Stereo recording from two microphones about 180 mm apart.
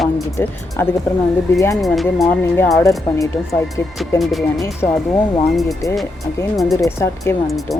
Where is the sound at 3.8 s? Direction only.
15° left (ahead or behind).